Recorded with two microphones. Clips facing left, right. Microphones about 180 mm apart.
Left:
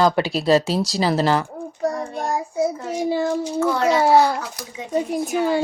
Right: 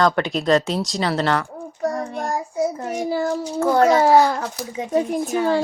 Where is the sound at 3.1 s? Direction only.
20° left (ahead or behind).